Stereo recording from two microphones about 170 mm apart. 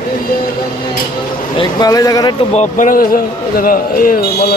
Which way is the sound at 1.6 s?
20° left (ahead or behind).